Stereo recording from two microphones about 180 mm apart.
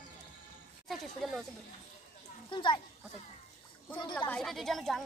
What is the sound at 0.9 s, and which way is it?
Speech, centre (ahead or behind).